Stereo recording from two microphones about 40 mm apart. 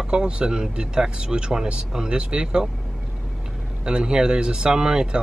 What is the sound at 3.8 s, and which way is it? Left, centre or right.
Speech, right.